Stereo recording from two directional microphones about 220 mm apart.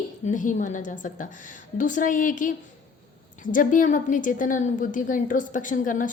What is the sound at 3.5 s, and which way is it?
A woman's voice, 35° left (ahead or behind).